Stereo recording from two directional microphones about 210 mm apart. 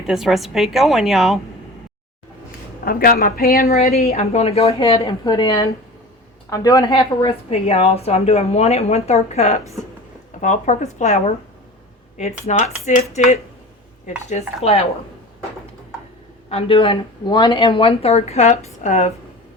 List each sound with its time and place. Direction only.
0.1 s a woman's voice: centre (ahead or behind)
2.8 s speech: 45° left (ahead or behind)
4.0 s speech: 30° left (ahead or behind)
12.5 s speech: 35° left (ahead or behind)
14.3 s speech: 30° left (ahead or behind)
16.5 s speech: 25° left (ahead or behind)